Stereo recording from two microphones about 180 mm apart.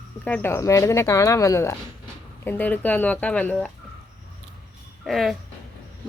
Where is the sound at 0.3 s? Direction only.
10° left (ahead or behind).